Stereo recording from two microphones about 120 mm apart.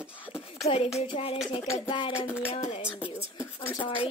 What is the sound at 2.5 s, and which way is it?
Speech, 65° left (ahead or behind).